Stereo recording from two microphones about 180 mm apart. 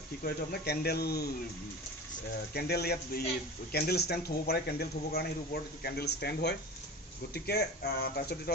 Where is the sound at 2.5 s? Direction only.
60° left (ahead or behind).